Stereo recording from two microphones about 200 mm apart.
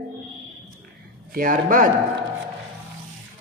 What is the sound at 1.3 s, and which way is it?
Speech, 45° right (ahead or behind).